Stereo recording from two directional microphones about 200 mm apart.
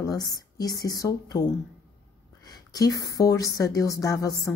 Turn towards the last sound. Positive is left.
turn(degrees=15)  # may be behind; listen again after turning